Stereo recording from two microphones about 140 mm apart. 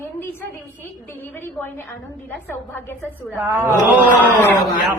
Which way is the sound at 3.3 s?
15° right (ahead or behind).